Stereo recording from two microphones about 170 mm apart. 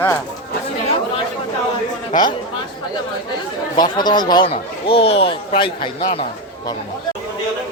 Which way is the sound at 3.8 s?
25° left (ahead or behind).